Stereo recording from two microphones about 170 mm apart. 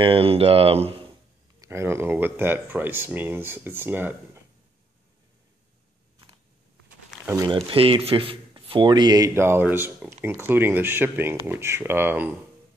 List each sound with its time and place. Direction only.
0.0 s speech: 35° right (ahead or behind)
1.6 s speech: 15° right (ahead or behind)
7.2 s speech: 20° right (ahead or behind)
7.5 s speech: 35° right (ahead or behind); by 12.4 s 10° right (ahead or behind)